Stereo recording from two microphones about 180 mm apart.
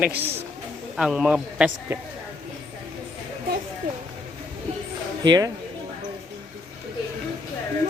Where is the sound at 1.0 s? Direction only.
Centre (ahead or behind).